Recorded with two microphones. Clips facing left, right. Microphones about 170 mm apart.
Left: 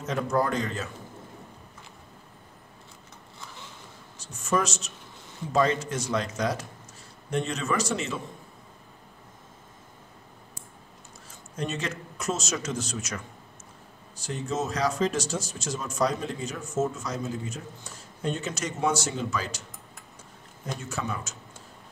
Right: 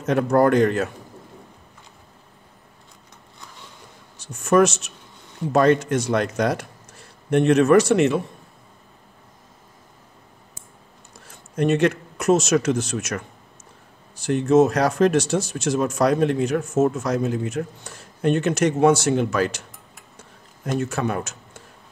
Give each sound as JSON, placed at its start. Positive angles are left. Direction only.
{"t": 0.0, "sound": "speech", "side_deg": -60}
{"t": 4.4, "sound": "speech", "side_deg": -60}
{"t": 11.2, "sound": "speech", "side_deg": -60}
{"t": 14.2, "sound": "speech", "side_deg": -65}
{"t": 20.6, "sound": "speech", "side_deg": -65}